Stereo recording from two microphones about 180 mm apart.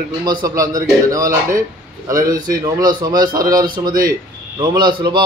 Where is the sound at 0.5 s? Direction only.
20° right (ahead or behind).